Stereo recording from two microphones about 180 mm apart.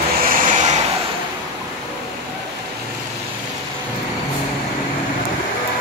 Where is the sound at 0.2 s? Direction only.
50° right (ahead or behind).